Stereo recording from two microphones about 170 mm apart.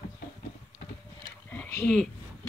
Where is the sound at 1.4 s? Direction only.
10° left (ahead or behind).